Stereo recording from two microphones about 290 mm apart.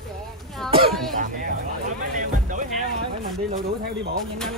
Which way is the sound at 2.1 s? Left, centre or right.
Right.